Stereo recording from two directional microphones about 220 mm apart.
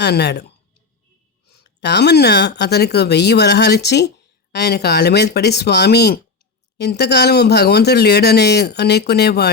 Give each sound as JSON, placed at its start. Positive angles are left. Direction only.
{"t": 0.0, "sound": "a woman's voice", "side_deg": 50}
{"t": 1.5, "sound": "speech", "side_deg": 50}